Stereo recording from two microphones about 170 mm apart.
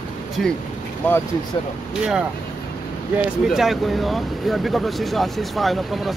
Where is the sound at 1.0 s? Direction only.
10° left (ahead or behind).